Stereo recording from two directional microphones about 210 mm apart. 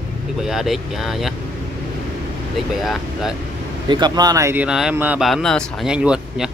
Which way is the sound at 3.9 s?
20° right (ahead or behind).